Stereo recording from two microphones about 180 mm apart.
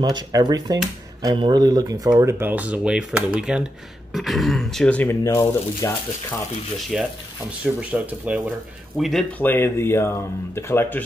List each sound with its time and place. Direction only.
0.1 s speech: 20° right (ahead or behind); by 5.9 s 15° left (ahead or behind)
6.9 s speech: centre (ahead or behind)
9.4 s speech: 10° left (ahead or behind)